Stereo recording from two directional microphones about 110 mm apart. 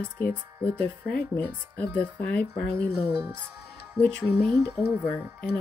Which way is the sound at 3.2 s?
15° right (ahead or behind).